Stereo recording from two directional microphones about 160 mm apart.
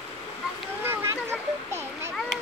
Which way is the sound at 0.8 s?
15° right (ahead or behind).